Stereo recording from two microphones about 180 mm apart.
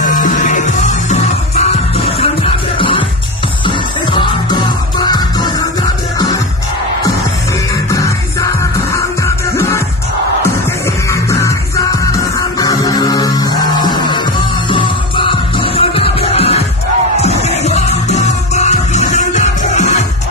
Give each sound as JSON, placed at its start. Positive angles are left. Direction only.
{"t": 0.0, "sound": "music", "side_deg": 45}
{"t": 7.9, "sound": "music", "side_deg": 20}
{"t": 11.1, "sound": "music", "side_deg": 15}